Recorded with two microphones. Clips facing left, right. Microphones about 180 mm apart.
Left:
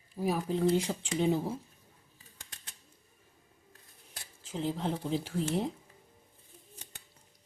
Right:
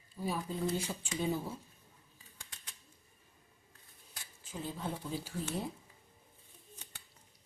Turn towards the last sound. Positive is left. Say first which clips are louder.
# left 7 dB
turn(degrees=90)